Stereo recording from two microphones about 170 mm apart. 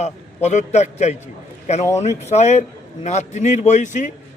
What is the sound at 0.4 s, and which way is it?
A man's voice, 40° left (ahead or behind).